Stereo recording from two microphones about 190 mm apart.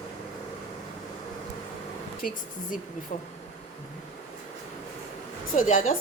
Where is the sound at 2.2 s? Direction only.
50° left (ahead or behind).